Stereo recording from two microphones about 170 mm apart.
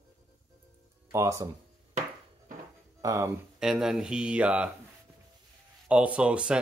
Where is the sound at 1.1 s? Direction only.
20° right (ahead or behind).